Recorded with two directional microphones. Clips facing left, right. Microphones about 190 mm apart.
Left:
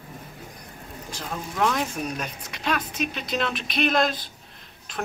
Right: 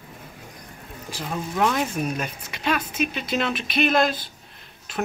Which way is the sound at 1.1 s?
5° right (ahead or behind).